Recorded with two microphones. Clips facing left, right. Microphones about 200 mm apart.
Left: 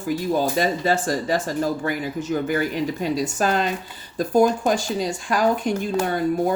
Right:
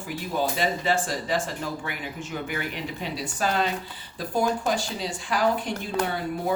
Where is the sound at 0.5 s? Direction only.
45° left (ahead or behind).